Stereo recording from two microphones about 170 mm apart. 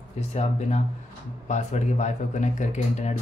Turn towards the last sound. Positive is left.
turn(degrees=45)  # may be behind; listen again after turning